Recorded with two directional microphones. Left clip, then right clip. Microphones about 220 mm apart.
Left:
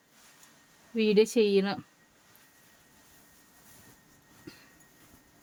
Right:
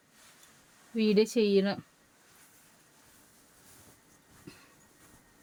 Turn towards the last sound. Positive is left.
turn(degrees=25)  # may be behind; listen again after turning